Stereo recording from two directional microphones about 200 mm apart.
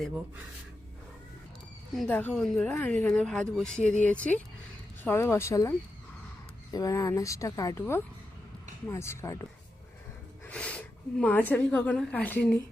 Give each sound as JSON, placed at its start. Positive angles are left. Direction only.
{"t": 1.9, "sound": "a woman's voice", "side_deg": 5}
{"t": 6.7, "sound": "a woman's voice", "side_deg": 15}